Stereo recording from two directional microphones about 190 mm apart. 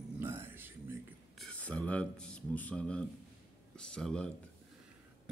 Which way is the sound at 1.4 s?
5° left (ahead or behind).